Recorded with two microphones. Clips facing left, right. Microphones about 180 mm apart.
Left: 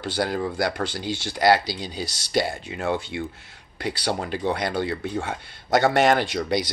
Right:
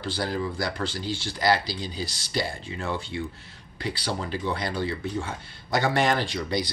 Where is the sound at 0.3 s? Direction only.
55° left (ahead or behind).